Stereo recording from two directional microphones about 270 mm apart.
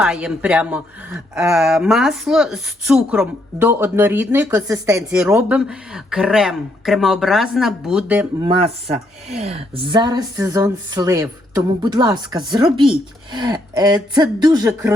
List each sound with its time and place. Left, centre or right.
0.0 s speech: centre
8.4 s speech: right